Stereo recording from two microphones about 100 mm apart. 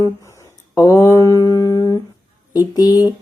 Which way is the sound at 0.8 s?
35° left (ahead or behind).